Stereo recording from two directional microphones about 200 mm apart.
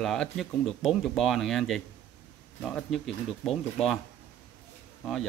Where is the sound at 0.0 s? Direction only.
Centre (ahead or behind).